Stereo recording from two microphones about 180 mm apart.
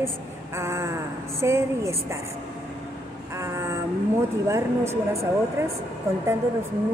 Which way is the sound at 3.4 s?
15° right (ahead or behind).